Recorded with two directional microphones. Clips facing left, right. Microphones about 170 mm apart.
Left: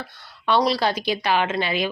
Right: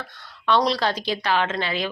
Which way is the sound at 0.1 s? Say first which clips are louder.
Even; 10° left (ahead or behind).